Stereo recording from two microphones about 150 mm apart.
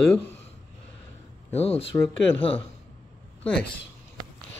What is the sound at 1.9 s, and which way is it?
Speech, 15° left (ahead or behind).